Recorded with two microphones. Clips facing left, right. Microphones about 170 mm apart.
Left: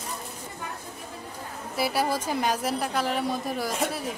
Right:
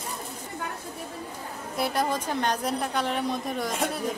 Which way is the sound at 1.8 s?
5° left (ahead or behind).